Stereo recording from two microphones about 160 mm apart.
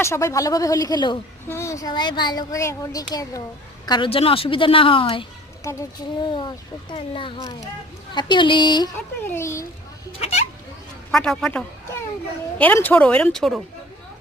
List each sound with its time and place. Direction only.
0.0 s a woman's voice: 20° left (ahead or behind)
9.2 s speech: 15° left (ahead or behind)
10.1 s a woman's voice: 40° left (ahead or behind)
11.1 s a man's voice: 5° left (ahead or behind)